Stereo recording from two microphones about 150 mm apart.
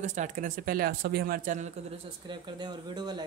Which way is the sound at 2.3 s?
30° right (ahead or behind).